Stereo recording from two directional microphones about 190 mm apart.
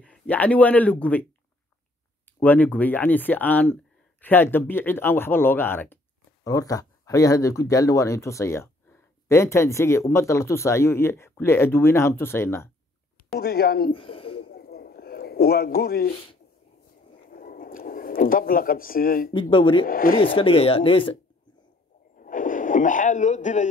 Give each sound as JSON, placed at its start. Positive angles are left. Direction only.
{"t": 0.0, "sound": "speech", "side_deg": 5}
{"t": 2.4, "sound": "speech", "side_deg": 10}
{"t": 13.4, "sound": "speech", "side_deg": 55}
{"t": 13.9, "sound": "speech", "side_deg": 30}
{"t": 14.4, "sound": "a sound", "side_deg": 55}
{"t": 17.2, "sound": "speech", "side_deg": 45}
{"t": 19.3, "sound": "speech", "side_deg": 25}
{"t": 19.9, "sound": "speech", "side_deg": 50}
{"t": 20.3, "sound": "speech", "side_deg": 30}
{"t": 22.1, "sound": "a sound", "side_deg": 45}